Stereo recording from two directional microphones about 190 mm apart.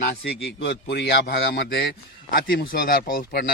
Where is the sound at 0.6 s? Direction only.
60° left (ahead or behind).